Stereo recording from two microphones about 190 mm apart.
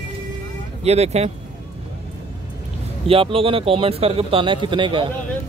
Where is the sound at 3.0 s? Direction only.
30° right (ahead or behind).